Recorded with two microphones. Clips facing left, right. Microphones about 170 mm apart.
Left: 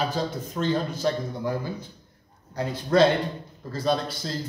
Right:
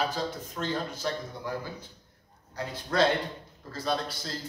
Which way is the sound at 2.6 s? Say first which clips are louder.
Left 7 dB; 25° left (ahead or behind).